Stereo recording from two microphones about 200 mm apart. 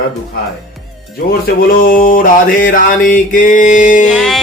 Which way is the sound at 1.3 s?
45° left (ahead or behind).